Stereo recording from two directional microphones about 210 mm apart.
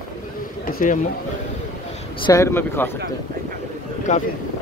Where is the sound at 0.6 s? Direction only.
40° left (ahead or behind).